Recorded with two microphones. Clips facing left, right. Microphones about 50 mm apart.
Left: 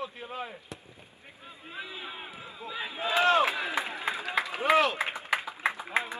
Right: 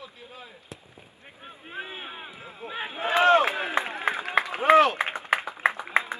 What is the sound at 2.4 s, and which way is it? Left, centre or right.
Run, right.